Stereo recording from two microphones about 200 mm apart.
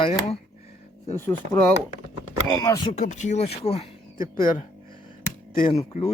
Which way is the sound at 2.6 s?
20° left (ahead or behind).